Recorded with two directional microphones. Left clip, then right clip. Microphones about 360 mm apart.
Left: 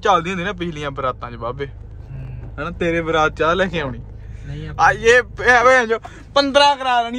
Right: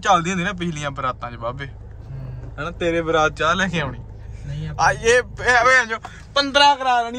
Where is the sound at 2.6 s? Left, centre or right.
Centre.